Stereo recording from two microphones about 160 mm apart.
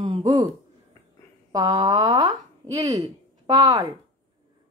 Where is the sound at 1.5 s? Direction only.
25° right (ahead or behind).